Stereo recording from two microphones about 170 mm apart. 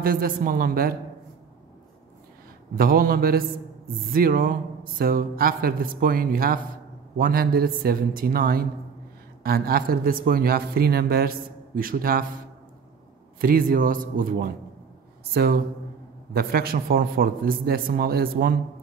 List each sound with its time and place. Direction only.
0.0 s speech: 60° right (ahead or behind)
2.7 s speech: 60° right (ahead or behind)
13.4 s speech: 60° right (ahead or behind)